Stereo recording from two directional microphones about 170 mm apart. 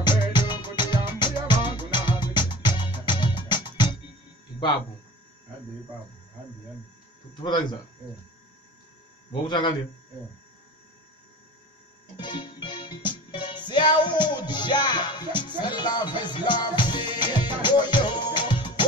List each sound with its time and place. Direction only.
0.3 s music: 25° left (ahead or behind)
7.3 s music: 25° left (ahead or behind)
9.3 s music: 30° left (ahead or behind)
12.2 s music: 25° left (ahead or behind)